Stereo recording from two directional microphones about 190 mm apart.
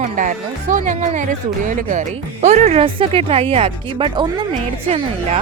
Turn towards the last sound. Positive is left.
turn(degrees=-30)  # may be behind; listen again after turning